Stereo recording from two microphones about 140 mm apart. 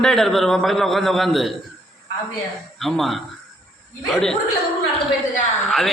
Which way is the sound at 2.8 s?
Centre (ahead or behind).